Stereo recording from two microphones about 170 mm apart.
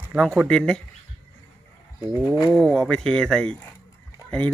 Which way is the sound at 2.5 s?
5° left (ahead or behind).